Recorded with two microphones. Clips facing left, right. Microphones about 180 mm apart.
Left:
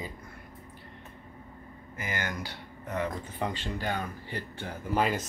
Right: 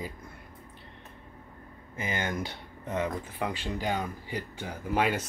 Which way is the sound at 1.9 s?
25° right (ahead or behind).